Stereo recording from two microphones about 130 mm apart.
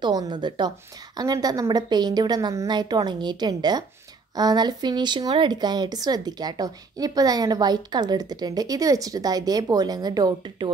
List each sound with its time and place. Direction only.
0.0 s speech: 35° right (ahead or behind)